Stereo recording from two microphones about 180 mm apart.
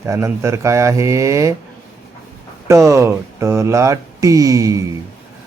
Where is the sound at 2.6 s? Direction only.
15° right (ahead or behind).